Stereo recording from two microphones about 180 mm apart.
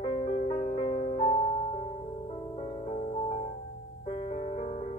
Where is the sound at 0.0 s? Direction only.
35° left (ahead or behind).